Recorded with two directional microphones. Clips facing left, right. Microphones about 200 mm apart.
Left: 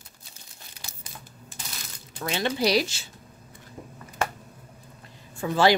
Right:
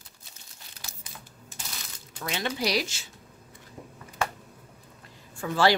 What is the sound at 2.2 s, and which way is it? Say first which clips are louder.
Speech: left 4 dB; 30° left (ahead or behind).